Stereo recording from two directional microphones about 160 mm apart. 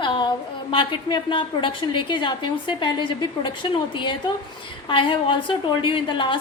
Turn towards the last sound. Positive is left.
turn(degrees=30)  # may be behind; listen again after turning